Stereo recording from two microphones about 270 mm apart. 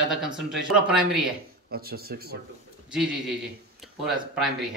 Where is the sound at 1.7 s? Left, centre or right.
Right.